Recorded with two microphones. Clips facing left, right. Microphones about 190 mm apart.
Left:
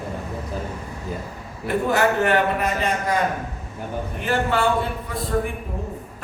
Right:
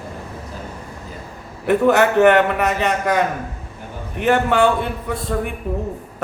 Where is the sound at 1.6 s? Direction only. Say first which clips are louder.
Right 5 dB; 70° right (ahead or behind).